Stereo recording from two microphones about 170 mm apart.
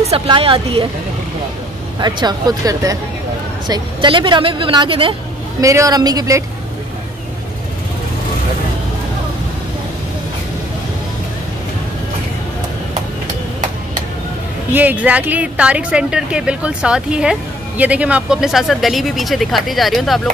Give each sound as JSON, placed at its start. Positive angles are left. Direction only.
{"t": 0.1, "sound": "speech", "side_deg": -35}
{"t": 2.0, "sound": "a woman's voice", "side_deg": -25}
{"t": 5.6, "sound": "a woman's voice", "side_deg": -20}
{"t": 14.7, "sound": "a woman's voice", "side_deg": -10}